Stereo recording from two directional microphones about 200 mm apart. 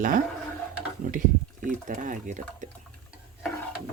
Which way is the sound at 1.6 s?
40° right (ahead or behind).